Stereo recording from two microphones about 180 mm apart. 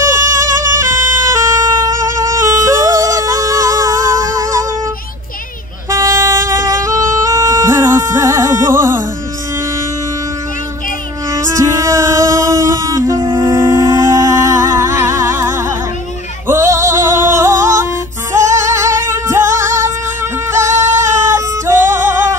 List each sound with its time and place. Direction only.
0.1 s music: 15° right (ahead or behind)
5.9 s music: 15° right (ahead or behind)
11.3 s music: 15° right (ahead or behind)
20.5 s singing: 15° right (ahead or behind)